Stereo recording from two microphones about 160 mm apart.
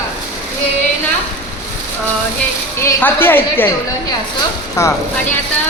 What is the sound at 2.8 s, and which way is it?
Speech, 15° left (ahead or behind).